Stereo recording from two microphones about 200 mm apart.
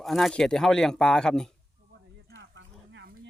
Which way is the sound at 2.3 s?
70° right (ahead or behind).